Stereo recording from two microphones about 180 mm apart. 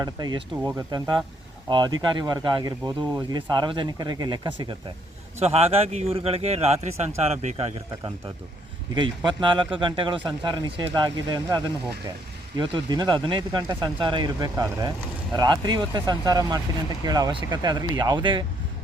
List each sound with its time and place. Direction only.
0.0 s speech: 20° right (ahead or behind)
0.5 s speech: 10° right (ahead or behind)
0.9 s a man's voice: 25° right (ahead or behind)